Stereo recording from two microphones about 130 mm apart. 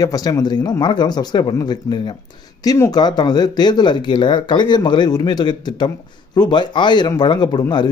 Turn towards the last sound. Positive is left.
turn(degrees=35)  # may be behind; listen again after turning